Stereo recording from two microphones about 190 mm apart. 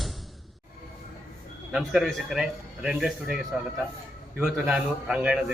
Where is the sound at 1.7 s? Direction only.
Centre (ahead or behind).